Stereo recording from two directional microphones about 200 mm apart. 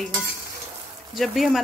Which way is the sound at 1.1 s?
Centre (ahead or behind).